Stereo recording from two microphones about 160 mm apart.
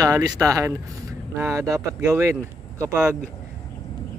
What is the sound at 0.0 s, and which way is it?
Speech, 25° right (ahead or behind).